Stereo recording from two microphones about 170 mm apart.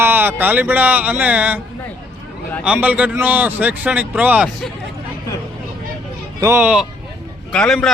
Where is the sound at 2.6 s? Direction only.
5° right (ahead or behind).